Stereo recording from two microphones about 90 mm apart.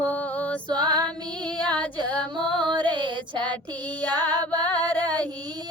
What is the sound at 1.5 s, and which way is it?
Female singing, 15° left (ahead or behind).